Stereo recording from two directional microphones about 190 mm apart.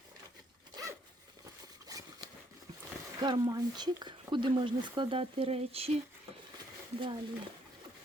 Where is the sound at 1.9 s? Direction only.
20° right (ahead or behind).